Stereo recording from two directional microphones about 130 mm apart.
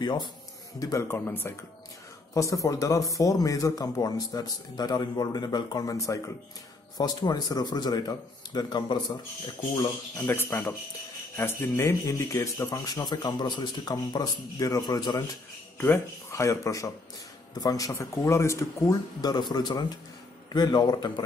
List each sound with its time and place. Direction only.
0.0 s speech: 35° left (ahead or behind)
10.1 s speech: 15° left (ahead or behind)
15.8 s speech: 20° left (ahead or behind)